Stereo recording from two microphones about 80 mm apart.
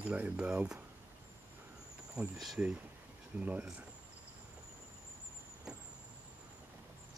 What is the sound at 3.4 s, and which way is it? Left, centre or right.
Speech, centre.